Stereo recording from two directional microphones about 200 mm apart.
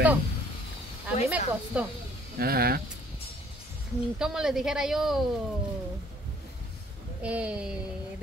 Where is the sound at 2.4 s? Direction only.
50° right (ahead or behind).